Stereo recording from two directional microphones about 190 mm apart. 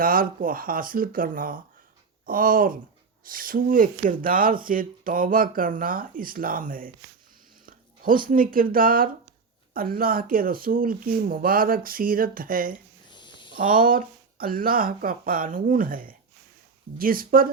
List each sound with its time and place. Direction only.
0.0 s speech: 50° right (ahead or behind)
13.1 s a sound: 25° left (ahead or behind)
13.6 s speech: 45° right (ahead or behind)